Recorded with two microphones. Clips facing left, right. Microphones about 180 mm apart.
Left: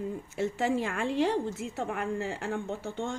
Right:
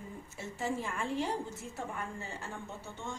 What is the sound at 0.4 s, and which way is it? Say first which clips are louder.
A woman's voice: left 8 dB; 90° left.